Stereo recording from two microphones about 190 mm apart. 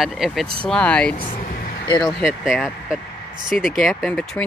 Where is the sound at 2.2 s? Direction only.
Centre (ahead or behind).